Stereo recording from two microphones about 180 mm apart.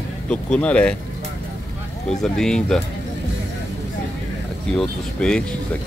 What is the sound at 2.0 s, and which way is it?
Speech, 5° left (ahead or behind).